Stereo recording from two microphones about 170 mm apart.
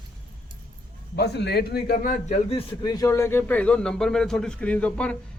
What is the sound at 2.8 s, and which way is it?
A man's voice, 20° left (ahead or behind).